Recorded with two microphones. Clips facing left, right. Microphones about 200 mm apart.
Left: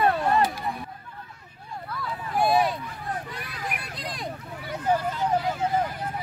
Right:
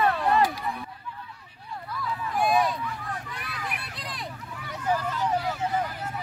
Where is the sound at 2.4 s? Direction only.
30° left (ahead or behind).